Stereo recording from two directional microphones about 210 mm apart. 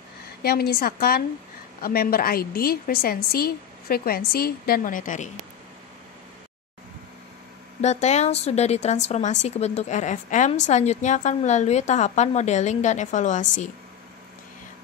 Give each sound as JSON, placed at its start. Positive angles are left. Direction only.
{"t": 0.4, "sound": "a woman's voice", "side_deg": 45}
{"t": 7.8, "sound": "a woman's voice", "side_deg": 30}